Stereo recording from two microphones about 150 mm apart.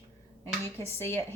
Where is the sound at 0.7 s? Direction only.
15° left (ahead or behind).